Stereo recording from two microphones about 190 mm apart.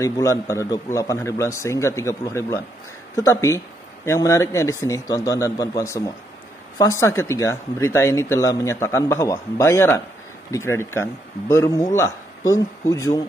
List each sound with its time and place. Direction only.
0.0 s speech: 15° left (ahead or behind)